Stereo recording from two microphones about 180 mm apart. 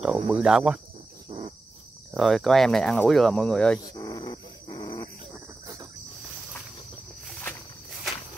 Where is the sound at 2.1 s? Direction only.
Centre (ahead or behind).